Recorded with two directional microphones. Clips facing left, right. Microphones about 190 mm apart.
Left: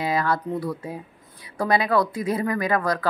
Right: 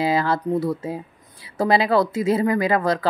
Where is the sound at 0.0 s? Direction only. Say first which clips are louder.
Right 3 dB; 30° right (ahead or behind).